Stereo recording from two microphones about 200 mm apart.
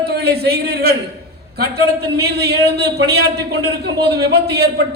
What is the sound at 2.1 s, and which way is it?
A man's voice, 55° right (ahead or behind).